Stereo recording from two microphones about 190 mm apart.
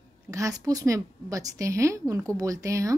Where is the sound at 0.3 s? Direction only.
15° right (ahead or behind).